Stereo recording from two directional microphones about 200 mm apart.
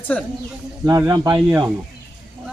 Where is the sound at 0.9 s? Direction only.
15° right (ahead or behind).